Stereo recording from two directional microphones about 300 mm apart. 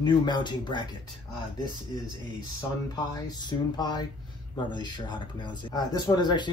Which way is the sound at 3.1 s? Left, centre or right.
Centre.